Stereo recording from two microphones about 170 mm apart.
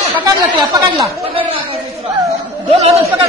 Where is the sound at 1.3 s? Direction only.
35° right (ahead or behind).